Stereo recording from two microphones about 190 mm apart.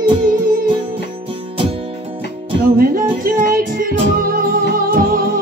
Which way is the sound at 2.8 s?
50° right (ahead or behind).